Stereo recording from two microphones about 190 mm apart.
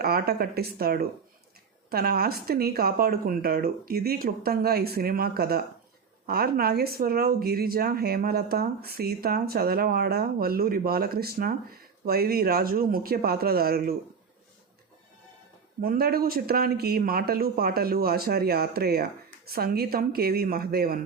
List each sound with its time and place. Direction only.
0.0 s speech: 55° right (ahead or behind)
15.8 s speech: 50° right (ahead or behind)